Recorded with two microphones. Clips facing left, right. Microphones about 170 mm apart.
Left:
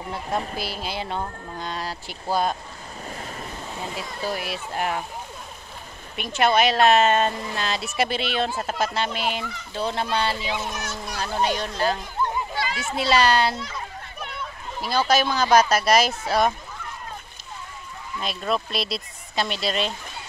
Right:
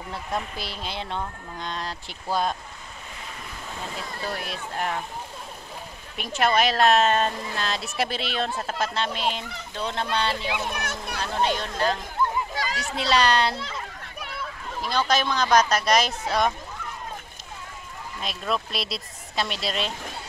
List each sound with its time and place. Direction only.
0.6 s speech: 5° left (ahead or behind)
3.8 s speech: 10° left (ahead or behind)
6.1 s speech: centre (ahead or behind)
10.7 s speech: 60° right (ahead or behind)
11.4 s speech: 5° left (ahead or behind)
12.5 s a sound: 40° right (ahead or behind)
12.9 s speech: 5° left (ahead or behind)
14.8 s speech: 5° left (ahead or behind)
18.2 s speech: centre (ahead or behind)